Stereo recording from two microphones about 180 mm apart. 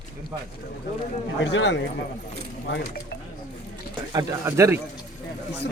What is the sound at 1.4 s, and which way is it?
Speech, 85° left.